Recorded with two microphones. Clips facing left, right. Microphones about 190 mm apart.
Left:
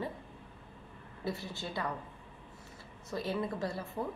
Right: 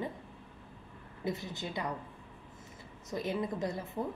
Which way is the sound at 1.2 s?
20° right (ahead or behind).